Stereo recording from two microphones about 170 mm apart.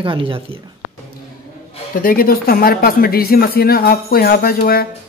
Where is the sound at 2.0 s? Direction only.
60° left (ahead or behind).